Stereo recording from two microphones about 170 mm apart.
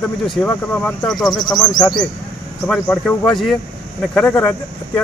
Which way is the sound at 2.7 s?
5° left (ahead or behind).